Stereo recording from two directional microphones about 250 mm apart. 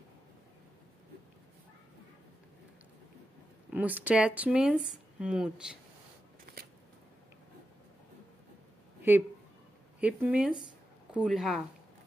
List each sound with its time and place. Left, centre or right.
3.7 s speech: centre
6.5 s shuffling cards: right
9.1 s speech: centre